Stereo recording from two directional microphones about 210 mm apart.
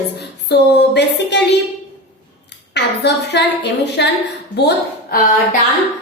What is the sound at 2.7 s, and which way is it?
A woman's voice, 55° left (ahead or behind).